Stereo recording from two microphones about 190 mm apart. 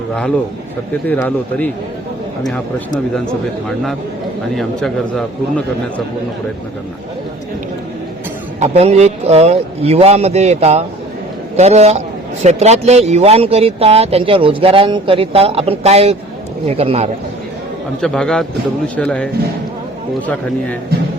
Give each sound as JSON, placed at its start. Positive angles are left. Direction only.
{"t": 0.1, "sound": "a man's voice", "side_deg": 5}
{"t": 4.5, "sound": "a man's voice", "side_deg": 0}
{"t": 8.5, "sound": "a man's voice", "side_deg": -35}
{"t": 18.0, "sound": "a man's voice", "side_deg": 5}